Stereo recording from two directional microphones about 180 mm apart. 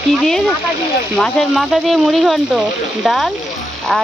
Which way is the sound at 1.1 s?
5° left (ahead or behind).